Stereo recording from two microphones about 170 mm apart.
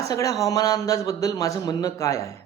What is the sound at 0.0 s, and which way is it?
A man's voice, 20° left (ahead or behind).